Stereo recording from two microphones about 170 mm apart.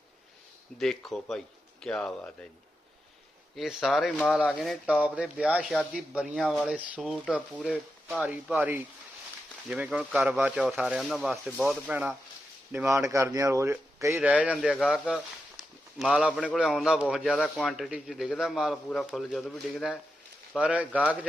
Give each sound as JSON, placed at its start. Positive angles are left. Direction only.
{"t": 0.8, "sound": "a man's voice", "side_deg": 0}
{"t": 3.5, "sound": "a man's voice", "side_deg": 0}